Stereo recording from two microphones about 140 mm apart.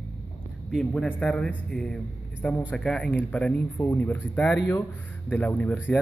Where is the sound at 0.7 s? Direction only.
5° left (ahead or behind).